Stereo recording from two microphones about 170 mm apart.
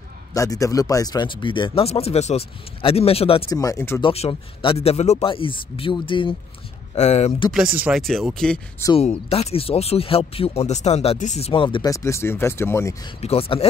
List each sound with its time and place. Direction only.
0.3 s speech: 20° left (ahead or behind)
3.4 s speech: 20° left (ahead or behind)
4.0 s speech: 35° left (ahead or behind)
7.0 s speech: 40° left (ahead or behind)
7.7 s speech: 10° right (ahead or behind)
8.9 s speech: 35° left (ahead or behind)
11.9 s speech: 15° left (ahead or behind)
13.2 s speech: 35° left (ahead or behind)